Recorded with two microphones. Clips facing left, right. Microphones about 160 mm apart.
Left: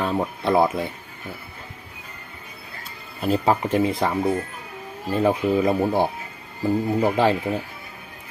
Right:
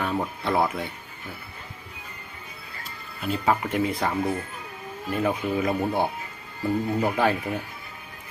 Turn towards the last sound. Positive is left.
turn(degrees=30)  # may be behind; listen again after turning